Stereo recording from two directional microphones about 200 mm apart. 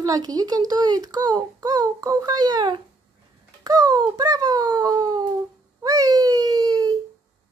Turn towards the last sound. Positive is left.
turn(degrees=-20)  # may be behind; listen again after turning